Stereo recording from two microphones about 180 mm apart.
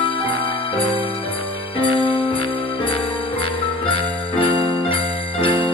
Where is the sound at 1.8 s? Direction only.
30° left (ahead or behind).